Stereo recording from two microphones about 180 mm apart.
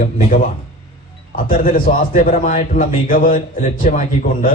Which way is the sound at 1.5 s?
50° left (ahead or behind).